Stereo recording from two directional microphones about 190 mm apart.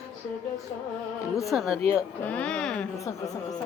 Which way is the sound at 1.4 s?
Centre (ahead or behind).